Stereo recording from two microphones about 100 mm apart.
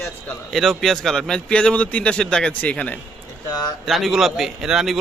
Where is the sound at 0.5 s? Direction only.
Centre (ahead or behind).